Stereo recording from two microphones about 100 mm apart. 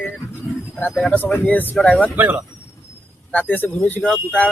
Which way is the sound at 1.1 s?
20° left (ahead or behind).